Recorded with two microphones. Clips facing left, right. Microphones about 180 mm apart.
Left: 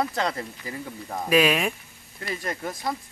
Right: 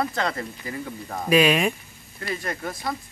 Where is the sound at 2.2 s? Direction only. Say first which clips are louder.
Right 1 dB; 20° left (ahead or behind).